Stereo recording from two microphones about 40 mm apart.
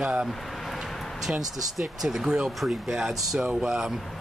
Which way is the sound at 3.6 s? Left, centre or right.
Right.